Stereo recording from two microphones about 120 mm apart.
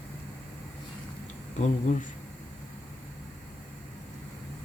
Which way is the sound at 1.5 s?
80° left.